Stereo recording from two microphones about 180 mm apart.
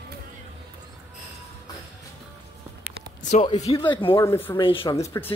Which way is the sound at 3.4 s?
35° left (ahead or behind).